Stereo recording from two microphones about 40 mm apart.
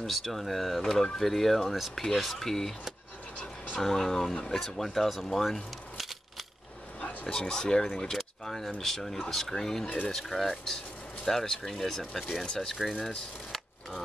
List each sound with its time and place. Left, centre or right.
0.0 s speech: centre
3.3 s a sound: left
3.8 s speech: centre
5.1 s a sound: centre
7.0 s speech: left
8.2 s speech: centre